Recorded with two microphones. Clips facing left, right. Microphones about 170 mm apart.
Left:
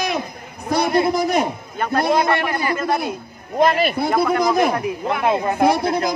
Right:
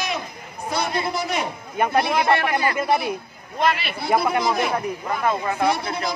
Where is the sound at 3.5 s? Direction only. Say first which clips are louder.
Left 6 dB; 45° left (ahead or behind).